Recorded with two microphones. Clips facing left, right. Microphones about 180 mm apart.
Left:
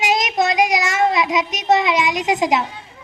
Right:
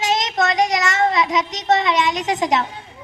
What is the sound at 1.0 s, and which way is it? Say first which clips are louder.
A man's voice: left 1 dB; 20° left (ahead or behind).